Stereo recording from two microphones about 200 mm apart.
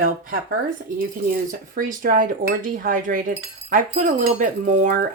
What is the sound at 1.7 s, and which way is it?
Speech, 45° right (ahead or behind).